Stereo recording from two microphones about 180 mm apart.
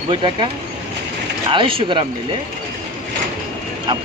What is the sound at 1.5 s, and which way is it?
Speech, 30° right (ahead or behind).